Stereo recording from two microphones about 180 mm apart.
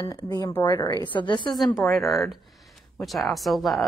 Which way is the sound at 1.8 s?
Centre (ahead or behind).